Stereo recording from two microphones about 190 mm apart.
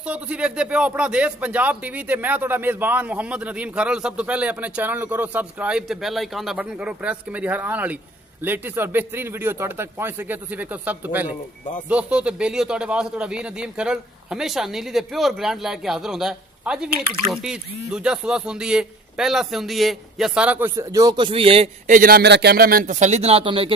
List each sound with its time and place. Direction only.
0.0 s a man's voice: 5° right (ahead or behind); by 21.9 s 30° right (ahead or behind)
21.9 s a man's voice: 50° right (ahead or behind); by 23.7 s 30° right (ahead or behind)